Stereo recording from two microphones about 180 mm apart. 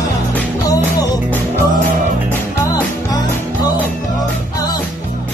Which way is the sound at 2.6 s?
20° left (ahead or behind).